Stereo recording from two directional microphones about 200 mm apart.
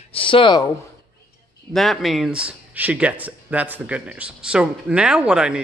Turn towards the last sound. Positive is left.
turn(degrees=-5)  # may be behind; listen again after turning